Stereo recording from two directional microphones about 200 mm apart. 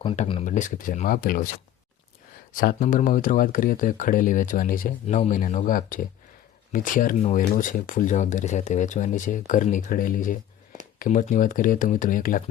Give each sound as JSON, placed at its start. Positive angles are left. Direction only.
{"t": 0.0, "sound": "speech", "side_deg": 30}
{"t": 2.5, "sound": "speech", "side_deg": 40}